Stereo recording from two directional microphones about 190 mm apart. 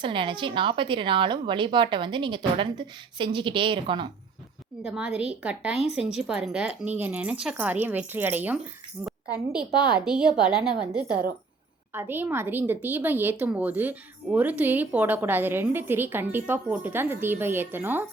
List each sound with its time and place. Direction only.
0.0 s a woman's voice: 25° right (ahead or behind)
4.8 s a woman's voice: 5° right (ahead or behind)
5.7 s speech: 35° left (ahead or behind)
6.0 s a woman's voice: 5° right (ahead or behind)